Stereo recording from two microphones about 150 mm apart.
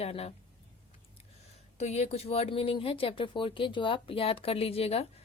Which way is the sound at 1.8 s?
50° left (ahead or behind).